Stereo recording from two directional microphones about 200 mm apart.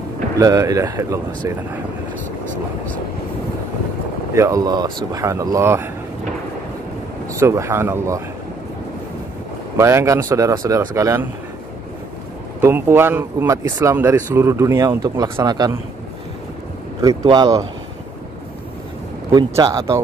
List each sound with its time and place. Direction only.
0.4 s speech: 20° right (ahead or behind)
4.3 s speech: 15° right (ahead or behind)
7.3 s speech: 15° right (ahead or behind)
9.8 s speech: 15° right (ahead or behind)
12.5 s speech: 10° right (ahead or behind)
17.0 s speech: 15° right (ahead or behind)
19.3 s speech: 20° right (ahead or behind)